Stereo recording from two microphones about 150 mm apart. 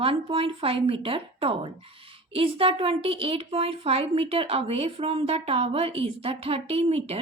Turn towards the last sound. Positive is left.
turn(degrees=-40)  # may be behind; listen again after turning